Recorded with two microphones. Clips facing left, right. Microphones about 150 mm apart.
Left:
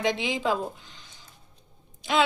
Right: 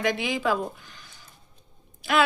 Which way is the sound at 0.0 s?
20° left (ahead or behind).